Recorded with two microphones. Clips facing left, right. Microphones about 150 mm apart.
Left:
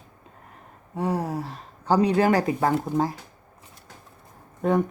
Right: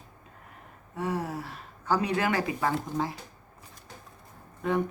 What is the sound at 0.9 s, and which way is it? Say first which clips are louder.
Speech: left 5 dB; 35° left (ahead or behind).